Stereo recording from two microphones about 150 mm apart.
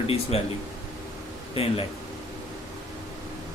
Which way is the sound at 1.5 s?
40° left (ahead or behind).